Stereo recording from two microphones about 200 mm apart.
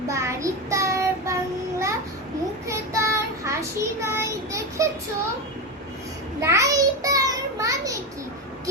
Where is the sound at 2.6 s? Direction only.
15° right (ahead or behind).